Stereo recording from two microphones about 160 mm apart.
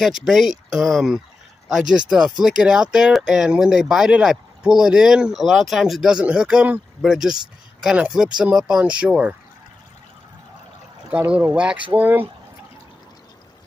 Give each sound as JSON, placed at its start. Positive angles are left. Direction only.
{"t": 0.0, "sound": "speech", "side_deg": 0}
{"t": 11.1, "sound": "speech", "side_deg": -10}